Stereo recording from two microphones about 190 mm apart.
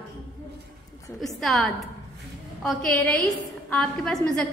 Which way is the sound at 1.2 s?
Centre (ahead or behind).